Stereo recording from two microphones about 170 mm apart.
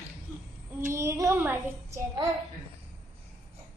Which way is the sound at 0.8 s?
15° right (ahead or behind).